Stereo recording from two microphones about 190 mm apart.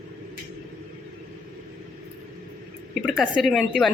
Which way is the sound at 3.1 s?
Centre (ahead or behind).